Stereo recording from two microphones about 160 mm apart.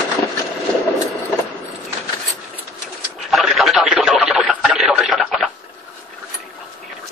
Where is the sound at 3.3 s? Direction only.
Centre (ahead or behind).